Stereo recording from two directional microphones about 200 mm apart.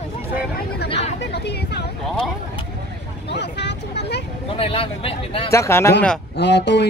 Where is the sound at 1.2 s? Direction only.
55° left (ahead or behind).